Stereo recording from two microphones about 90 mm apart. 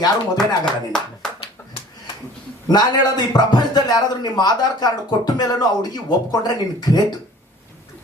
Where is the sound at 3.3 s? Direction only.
50° left (ahead or behind).